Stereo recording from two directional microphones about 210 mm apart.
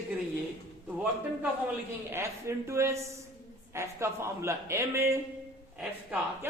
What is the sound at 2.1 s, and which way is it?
A man's voice, 15° right (ahead or behind).